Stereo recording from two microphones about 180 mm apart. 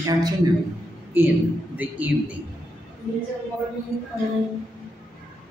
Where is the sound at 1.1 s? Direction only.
10° right (ahead or behind).